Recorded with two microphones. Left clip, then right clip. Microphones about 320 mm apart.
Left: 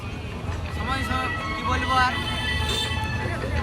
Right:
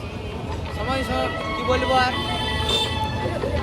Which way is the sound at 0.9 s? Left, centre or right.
Centre.